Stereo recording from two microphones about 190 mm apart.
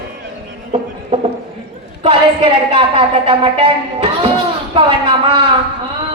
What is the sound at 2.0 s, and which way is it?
A woman's voice, 30° right (ahead or behind).